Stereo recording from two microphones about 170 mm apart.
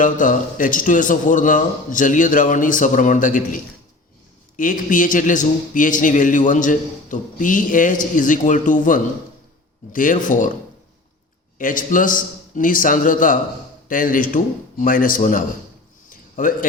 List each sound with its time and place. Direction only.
0.0 s a man's voice: 50° left (ahead or behind)
11.5 s a man's voice: 50° left (ahead or behind)
16.0 s a sound: 50° left (ahead or behind)